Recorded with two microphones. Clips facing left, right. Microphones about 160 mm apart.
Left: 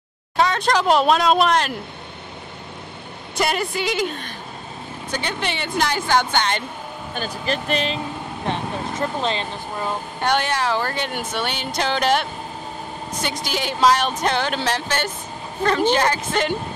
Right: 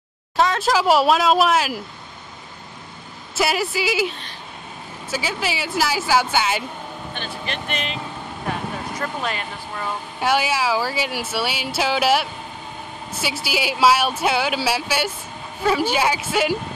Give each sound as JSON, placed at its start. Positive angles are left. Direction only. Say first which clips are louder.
{"t": 0.4, "sound": "speech", "louder": "even", "side_deg": 0}
{"t": 3.3, "sound": "speech", "louder": "right 1 dB", "side_deg": -5}
{"t": 5.1, "sound": "speech", "louder": "right 1 dB", "side_deg": -5}
{"t": 7.2, "sound": "speech", "louder": "left 6 dB", "side_deg": 40}
{"t": 10.2, "sound": "speech", "louder": "right 1 dB", "side_deg": -5}